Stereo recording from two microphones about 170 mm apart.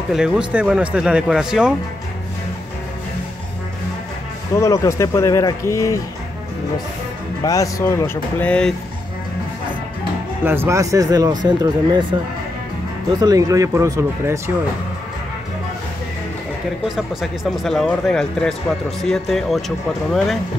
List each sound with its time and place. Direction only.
0.1 s speech: 5° right (ahead or behind)
4.6 s speech: 15° left (ahead or behind)
7.4 s speech: 20° left (ahead or behind)
10.4 s speech: 15° right (ahead or behind)
13.2 s speech: 20° right (ahead or behind)
16.8 s speech: centre (ahead or behind)